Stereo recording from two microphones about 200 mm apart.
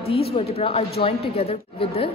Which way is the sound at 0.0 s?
30° left (ahead or behind).